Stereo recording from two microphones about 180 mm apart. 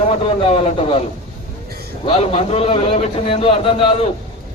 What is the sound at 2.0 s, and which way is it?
A man's voice, 30° left (ahead or behind).